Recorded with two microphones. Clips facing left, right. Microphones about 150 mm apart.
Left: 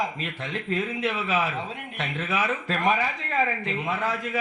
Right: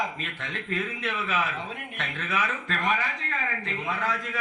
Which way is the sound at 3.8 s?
25° left (ahead or behind).